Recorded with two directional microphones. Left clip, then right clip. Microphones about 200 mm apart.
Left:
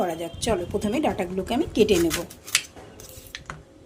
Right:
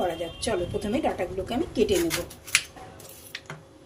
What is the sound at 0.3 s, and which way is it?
A woman's voice, 40° left (ahead or behind).